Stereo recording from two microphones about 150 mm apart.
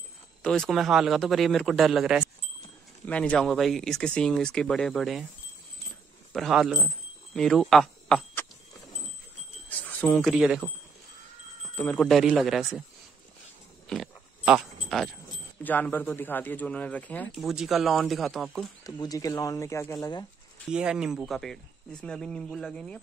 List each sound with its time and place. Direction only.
0.4 s speech: 5° left (ahead or behind)
3.1 s speech: 10° left (ahead or behind)
6.3 s speech: centre (ahead or behind)
9.7 s speech: 10° left (ahead or behind); by 10.7 s 5° right (ahead or behind)
11.7 s speech: 10° left (ahead or behind)
12.1 s speech: centre (ahead or behind)
13.8 s a sound: 5° right (ahead or behind)
15.6 s speech: 10° left (ahead or behind)
17.3 s speech: centre (ahead or behind)
18.9 s speech: 25° left (ahead or behind)
20.6 s speech: 5° right (ahead or behind)